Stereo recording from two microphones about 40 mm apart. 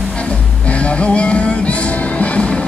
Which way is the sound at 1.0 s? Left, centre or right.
Left.